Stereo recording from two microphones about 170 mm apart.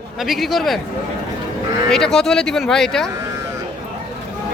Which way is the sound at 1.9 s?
5° left (ahead or behind).